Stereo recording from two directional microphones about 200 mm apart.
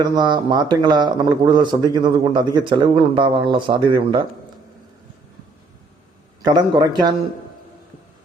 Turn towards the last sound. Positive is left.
turn(degrees=-20)  # may be behind; listen again after turning